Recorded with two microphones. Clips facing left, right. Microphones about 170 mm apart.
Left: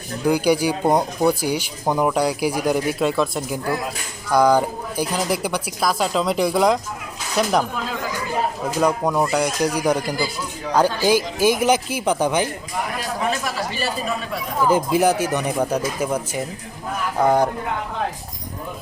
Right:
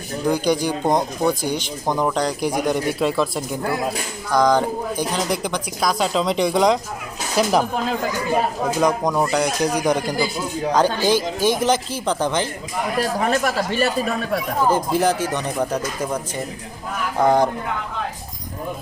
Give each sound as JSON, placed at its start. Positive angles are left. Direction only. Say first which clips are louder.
{"t": 0.3, "sound": "speech", "louder": "left 2 dB", "side_deg": 10}
{"t": 8.8, "sound": "speech", "louder": "left 1 dB", "side_deg": 5}
{"t": 13.0, "sound": "speech", "louder": "right 7 dB", "side_deg": -55}
{"t": 14.7, "sound": "speech", "louder": "left 2 dB", "side_deg": 10}